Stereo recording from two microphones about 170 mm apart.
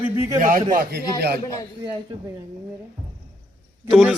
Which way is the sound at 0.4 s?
55° right (ahead or behind).